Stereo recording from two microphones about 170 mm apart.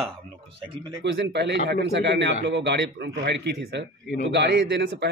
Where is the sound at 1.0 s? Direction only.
90° right.